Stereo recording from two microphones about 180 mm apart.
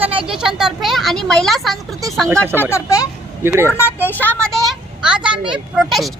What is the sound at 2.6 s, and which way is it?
Speech, 15° left (ahead or behind).